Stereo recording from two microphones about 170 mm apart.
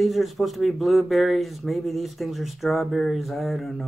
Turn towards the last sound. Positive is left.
turn(degrees=0)  # may be behind; listen again after turning